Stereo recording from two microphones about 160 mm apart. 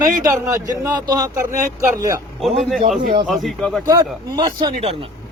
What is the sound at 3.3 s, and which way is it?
Speech, centre (ahead or behind).